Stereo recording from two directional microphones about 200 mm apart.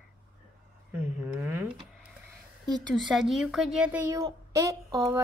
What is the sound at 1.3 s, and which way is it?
Speech, 5° right (ahead or behind).